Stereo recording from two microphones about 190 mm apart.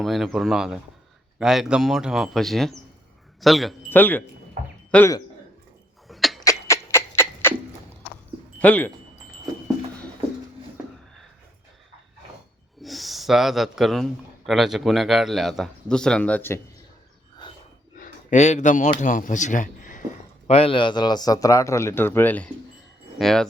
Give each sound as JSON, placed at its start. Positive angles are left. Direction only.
{"t": 0.0, "sound": "a man's voice", "side_deg": 0}
{"t": 6.1, "sound": "a sound", "side_deg": 0}
{"t": 6.4, "sound": "a sound", "side_deg": 15}
{"t": 8.5, "sound": "speech", "side_deg": 5}
{"t": 12.8, "sound": "a man's voice", "side_deg": 0}
{"t": 18.0, "sound": "speech", "side_deg": 40}
{"t": 20.5, "sound": "a man's voice", "side_deg": 30}